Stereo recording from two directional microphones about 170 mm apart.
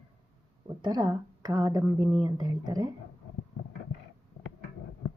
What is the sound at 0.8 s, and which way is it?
A woman's voice, 25° right (ahead or behind).